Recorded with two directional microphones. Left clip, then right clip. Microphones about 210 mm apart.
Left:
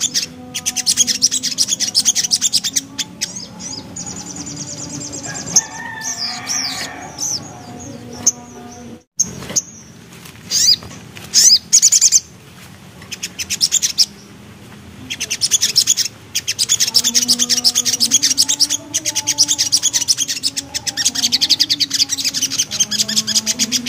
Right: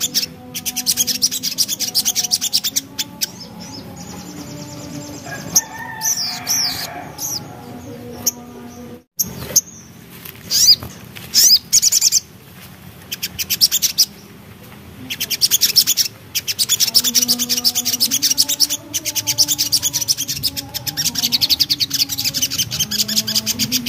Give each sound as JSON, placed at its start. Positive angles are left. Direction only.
{"t": 0.0, "sound": "bird", "side_deg": 0}
{"t": 6.4, "sound": "bird", "side_deg": 0}
{"t": 7.2, "sound": "music", "side_deg": 0}
{"t": 9.6, "sound": "dog", "side_deg": -30}
{"t": 10.5, "sound": "a sound", "side_deg": -20}
{"t": 11.3, "sound": "bird", "side_deg": 0}
{"t": 13.1, "sound": "bird", "side_deg": -10}